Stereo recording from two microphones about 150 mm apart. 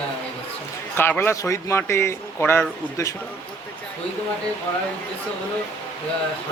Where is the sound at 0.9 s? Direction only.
15° left (ahead or behind).